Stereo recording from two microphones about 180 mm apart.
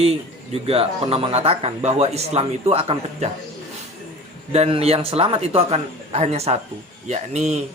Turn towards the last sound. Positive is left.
turn(degrees=-40)  # may be behind; listen again after turning